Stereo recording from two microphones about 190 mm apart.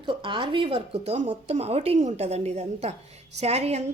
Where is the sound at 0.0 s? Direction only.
25° right (ahead or behind).